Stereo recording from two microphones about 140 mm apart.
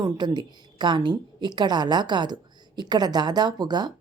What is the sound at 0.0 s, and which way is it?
A woman's voice, 30° right (ahead or behind).